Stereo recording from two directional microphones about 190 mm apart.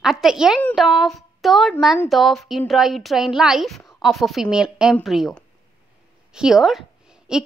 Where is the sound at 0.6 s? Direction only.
10° left (ahead or behind).